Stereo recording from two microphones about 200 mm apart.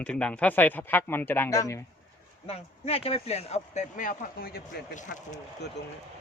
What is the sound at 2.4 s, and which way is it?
Speech, 30° left (ahead or behind).